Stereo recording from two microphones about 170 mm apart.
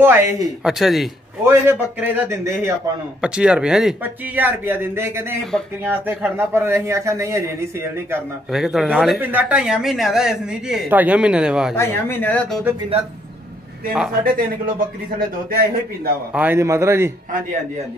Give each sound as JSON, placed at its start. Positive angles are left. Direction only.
{"t": 0.0, "sound": "speech", "side_deg": -10}
{"t": 0.7, "sound": "speech", "side_deg": 0}
{"t": 1.4, "sound": "speech", "side_deg": -15}
{"t": 8.5, "sound": "speech", "side_deg": -5}
{"t": 11.7, "sound": "speech", "side_deg": 15}
{"t": 14.2, "sound": "a man's voice", "side_deg": -55}
{"t": 16.3, "sound": "speech", "side_deg": -15}